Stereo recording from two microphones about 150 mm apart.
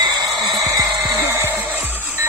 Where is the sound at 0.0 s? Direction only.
30° right (ahead or behind).